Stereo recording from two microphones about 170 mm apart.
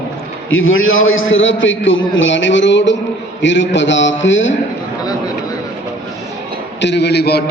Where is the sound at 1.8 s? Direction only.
90° left.